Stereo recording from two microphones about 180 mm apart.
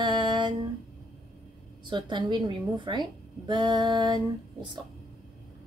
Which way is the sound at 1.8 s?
25° right (ahead or behind).